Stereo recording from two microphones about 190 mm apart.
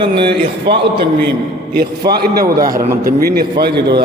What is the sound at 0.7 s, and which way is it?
A man's voice, 60° right (ahead or behind).